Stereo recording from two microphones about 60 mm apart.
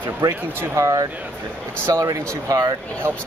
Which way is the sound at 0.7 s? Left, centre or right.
Right.